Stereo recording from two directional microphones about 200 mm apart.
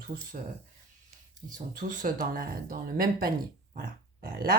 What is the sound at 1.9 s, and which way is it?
Speech, 45° right (ahead or behind).